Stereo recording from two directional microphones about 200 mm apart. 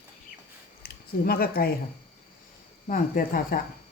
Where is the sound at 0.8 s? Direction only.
50° left (ahead or behind).